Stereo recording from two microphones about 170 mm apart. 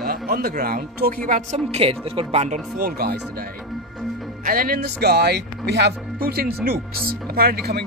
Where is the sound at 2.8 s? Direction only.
60° right (ahead or behind).